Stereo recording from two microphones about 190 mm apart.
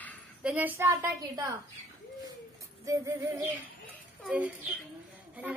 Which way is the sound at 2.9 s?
15° right (ahead or behind).